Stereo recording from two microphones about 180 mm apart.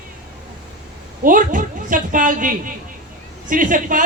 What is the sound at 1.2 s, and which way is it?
A man's voice, 50° right (ahead or behind).